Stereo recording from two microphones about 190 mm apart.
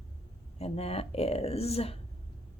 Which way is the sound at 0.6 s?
30° left (ahead or behind).